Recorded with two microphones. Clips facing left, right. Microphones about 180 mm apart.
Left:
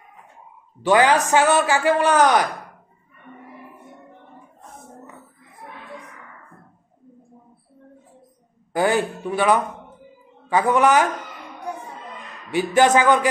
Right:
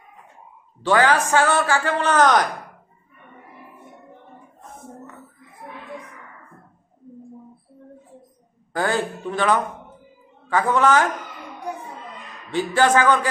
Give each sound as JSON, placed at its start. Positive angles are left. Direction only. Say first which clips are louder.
{"t": 0.8, "sound": "speech", "louder": "left 2 dB", "side_deg": 15}
{"t": 8.7, "sound": "speech", "louder": "left 3 dB", "side_deg": 15}
{"t": 12.4, "sound": "speech", "louder": "left 2 dB", "side_deg": 15}